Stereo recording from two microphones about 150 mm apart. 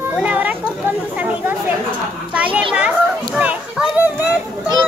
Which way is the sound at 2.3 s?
10° right (ahead or behind).